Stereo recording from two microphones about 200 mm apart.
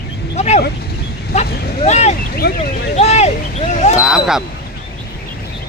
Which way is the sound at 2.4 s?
55° left (ahead or behind).